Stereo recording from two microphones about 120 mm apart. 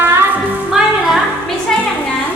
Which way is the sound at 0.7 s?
Centre (ahead or behind).